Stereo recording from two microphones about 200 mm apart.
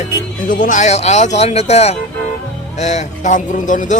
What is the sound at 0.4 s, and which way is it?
Speech, 40° left (ahead or behind).